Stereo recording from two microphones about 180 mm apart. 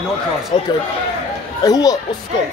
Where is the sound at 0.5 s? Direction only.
30° left (ahead or behind).